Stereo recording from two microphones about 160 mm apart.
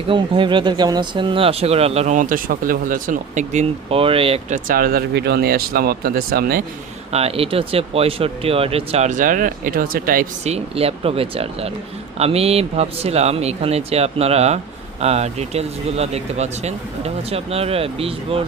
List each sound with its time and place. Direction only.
0.1 s speech: 30° right (ahead or behind)
4.5 s speech: 65° right (ahead or behind)
7.1 s speech: 40° right (ahead or behind); by 10.2 s 60° right (ahead or behind)
10.4 s speech: 40° right (ahead or behind)